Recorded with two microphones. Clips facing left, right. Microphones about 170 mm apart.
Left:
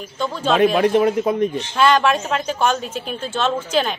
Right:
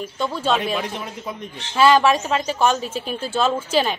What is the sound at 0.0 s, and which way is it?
Speech, 5° right (ahead or behind).